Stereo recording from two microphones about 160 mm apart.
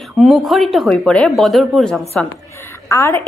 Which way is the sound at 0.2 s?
Centre (ahead or behind).